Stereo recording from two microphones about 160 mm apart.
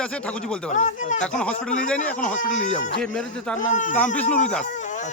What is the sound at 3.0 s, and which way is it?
Speech, 5° left (ahead or behind).